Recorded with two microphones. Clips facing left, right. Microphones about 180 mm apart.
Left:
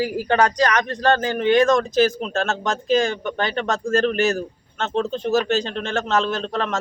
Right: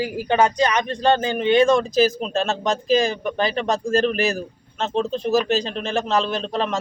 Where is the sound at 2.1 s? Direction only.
35° right (ahead or behind).